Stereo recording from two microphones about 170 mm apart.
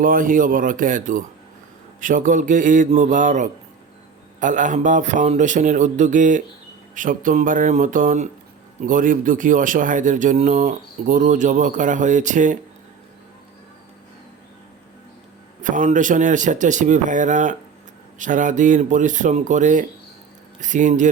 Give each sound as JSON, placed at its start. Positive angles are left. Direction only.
{"t": 0.0, "sound": "speech", "side_deg": -55}
{"t": 15.6, "sound": "speech", "side_deg": -50}